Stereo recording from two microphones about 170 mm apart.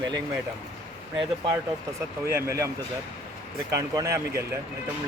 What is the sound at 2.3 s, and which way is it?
Speech, 15° right (ahead or behind).